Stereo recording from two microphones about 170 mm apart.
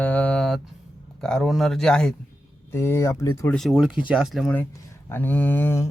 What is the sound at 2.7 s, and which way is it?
Speech, 15° left (ahead or behind).